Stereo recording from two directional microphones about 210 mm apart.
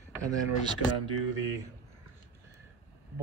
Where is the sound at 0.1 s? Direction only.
15° right (ahead or behind).